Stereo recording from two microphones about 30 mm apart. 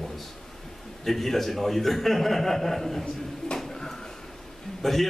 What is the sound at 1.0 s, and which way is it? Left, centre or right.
A man's voice, centre.